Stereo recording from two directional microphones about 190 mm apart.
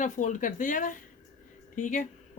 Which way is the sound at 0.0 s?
40° left (ahead or behind).